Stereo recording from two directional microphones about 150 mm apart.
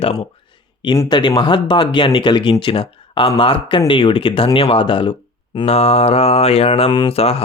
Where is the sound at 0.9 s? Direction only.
30° left (ahead or behind).